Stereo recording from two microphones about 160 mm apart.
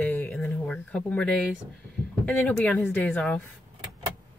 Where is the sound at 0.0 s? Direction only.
10° left (ahead or behind).